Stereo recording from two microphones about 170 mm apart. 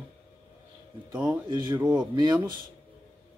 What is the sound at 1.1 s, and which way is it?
Speech, 25° right (ahead or behind).